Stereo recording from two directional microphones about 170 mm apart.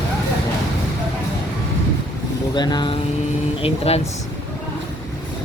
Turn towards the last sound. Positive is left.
turn(degrees=35)  # may be behind; listen again after turning